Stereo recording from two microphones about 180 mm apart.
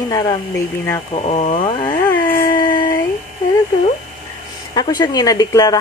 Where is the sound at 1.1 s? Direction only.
35° left (ahead or behind).